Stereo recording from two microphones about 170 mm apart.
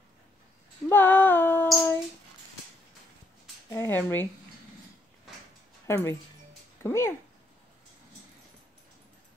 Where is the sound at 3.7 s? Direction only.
15° left (ahead or behind).